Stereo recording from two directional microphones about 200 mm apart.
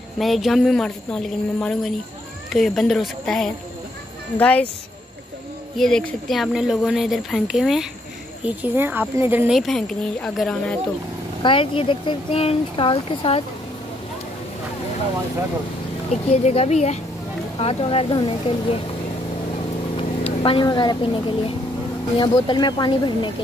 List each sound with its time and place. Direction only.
0.2 s speech: centre (ahead or behind)
5.8 s speech: centre (ahead or behind)
11.4 s speech: 25° left (ahead or behind)
16.1 s speech: 35° left (ahead or behind)
20.0 s speech: 25° left (ahead or behind)